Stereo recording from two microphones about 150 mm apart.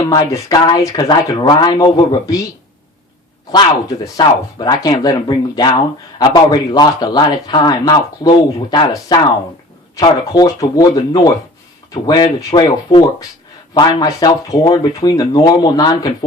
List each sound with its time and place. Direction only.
0.0 s speech: 25° left (ahead or behind)
3.5 s speech: 25° left (ahead or behind)